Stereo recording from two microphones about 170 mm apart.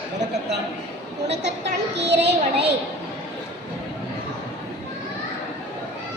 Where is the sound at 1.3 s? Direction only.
85° right.